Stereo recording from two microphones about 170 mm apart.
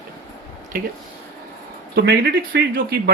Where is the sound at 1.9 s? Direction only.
65° right (ahead or behind).